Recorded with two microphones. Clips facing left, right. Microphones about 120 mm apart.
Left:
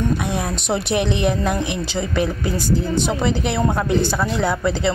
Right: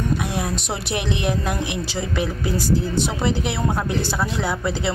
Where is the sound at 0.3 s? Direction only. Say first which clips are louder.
Left 3 dB; 5° right (ahead or behind).